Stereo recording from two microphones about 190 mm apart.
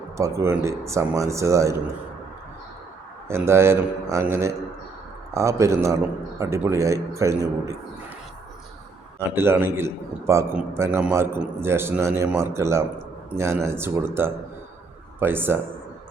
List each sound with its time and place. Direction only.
0.2 s a man's voice: 15° right (ahead or behind)
3.2 s a man's voice: 15° right (ahead or behind)
9.1 s a man's voice: 10° right (ahead or behind)